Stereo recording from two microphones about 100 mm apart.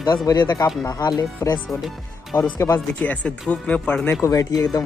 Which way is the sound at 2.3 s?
15° left (ahead or behind).